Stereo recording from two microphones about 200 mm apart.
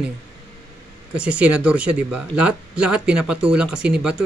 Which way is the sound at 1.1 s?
5° right (ahead or behind).